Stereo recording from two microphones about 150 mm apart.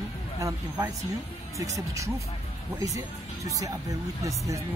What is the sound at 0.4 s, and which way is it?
Speech, 25° right (ahead or behind).